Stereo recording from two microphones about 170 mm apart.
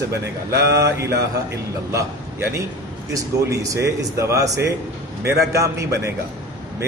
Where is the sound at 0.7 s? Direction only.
20° right (ahead or behind).